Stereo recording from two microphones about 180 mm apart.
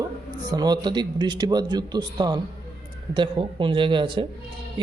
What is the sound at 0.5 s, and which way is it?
A man's voice, 25° right (ahead or behind).